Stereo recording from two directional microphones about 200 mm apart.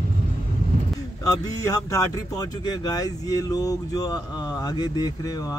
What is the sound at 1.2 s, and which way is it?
Speech, 20° left (ahead or behind).